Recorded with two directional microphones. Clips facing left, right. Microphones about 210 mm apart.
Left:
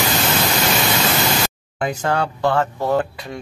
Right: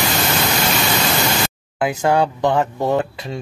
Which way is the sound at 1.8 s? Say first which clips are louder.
Right 4 dB; 10° right (ahead or behind).